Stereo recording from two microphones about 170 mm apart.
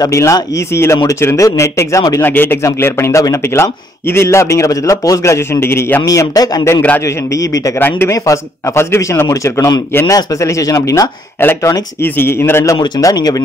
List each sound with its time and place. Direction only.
0.0 s speech: 20° left (ahead or behind)
12.7 s speech: 25° left (ahead or behind)